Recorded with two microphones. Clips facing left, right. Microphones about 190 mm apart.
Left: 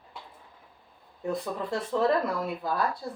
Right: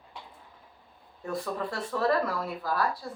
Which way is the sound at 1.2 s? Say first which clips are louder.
Left 2 dB; 20° left (ahead or behind).